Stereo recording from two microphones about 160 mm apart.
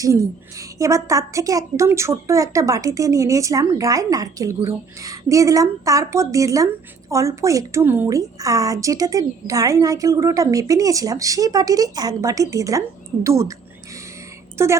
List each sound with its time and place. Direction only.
0.0 s a woman's voice: 20° right (ahead or behind)
14.6 s a woman's voice: 15° right (ahead or behind)